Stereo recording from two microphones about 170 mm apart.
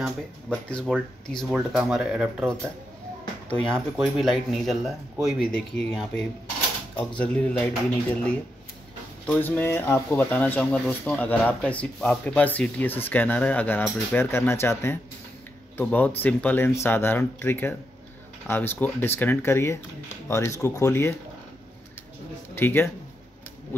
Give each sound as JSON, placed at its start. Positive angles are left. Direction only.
{"t": 0.5, "sound": "speech", "side_deg": 5}
{"t": 3.7, "sound": "speech", "side_deg": 0}
{"t": 22.6, "sound": "speech", "side_deg": 15}